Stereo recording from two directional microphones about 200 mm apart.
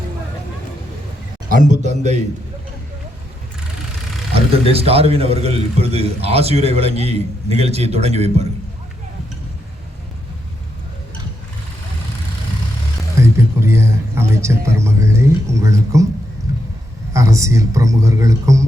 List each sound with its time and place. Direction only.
1.5 s a man's voice: 40° right (ahead or behind)
4.6 s a man's voice: 30° right (ahead or behind)
13.1 s a sound: 15° right (ahead or behind)
17.2 s speech: 15° right (ahead or behind)